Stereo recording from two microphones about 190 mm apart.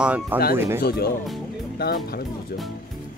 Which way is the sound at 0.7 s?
55° left (ahead or behind).